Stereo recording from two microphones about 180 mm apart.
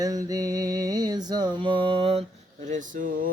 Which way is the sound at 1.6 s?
30° right (ahead or behind).